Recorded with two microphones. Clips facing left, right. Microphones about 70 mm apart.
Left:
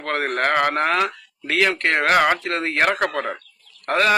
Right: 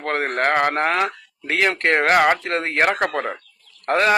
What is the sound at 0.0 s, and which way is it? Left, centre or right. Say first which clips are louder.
A man's voice: right 1 dB; right.